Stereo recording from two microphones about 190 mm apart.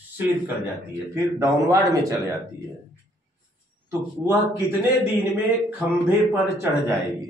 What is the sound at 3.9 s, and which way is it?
A man's voice, 15° right (ahead or behind).